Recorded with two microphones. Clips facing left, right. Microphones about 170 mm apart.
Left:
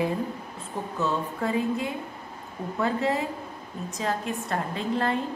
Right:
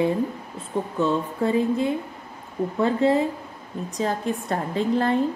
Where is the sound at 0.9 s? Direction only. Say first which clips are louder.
Right 4 dB; 30° right (ahead or behind).